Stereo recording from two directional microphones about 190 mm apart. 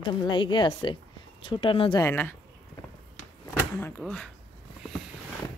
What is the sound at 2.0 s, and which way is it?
Speech, 10° left (ahead or behind).